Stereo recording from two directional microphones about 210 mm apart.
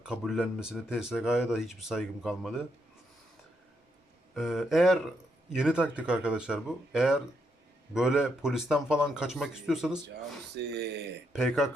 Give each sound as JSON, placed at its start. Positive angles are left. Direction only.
{"t": 0.0, "sound": "speech", "side_deg": -5}
{"t": 4.4, "sound": "speech", "side_deg": 0}
{"t": 10.5, "sound": "speech", "side_deg": -50}
{"t": 11.3, "sound": "speech", "side_deg": 0}